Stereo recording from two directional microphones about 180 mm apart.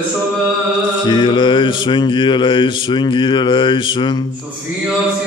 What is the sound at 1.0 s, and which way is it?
Mantra, 25° left (ahead or behind).